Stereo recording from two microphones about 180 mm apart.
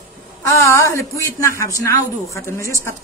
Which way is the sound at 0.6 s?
15° left (ahead or behind).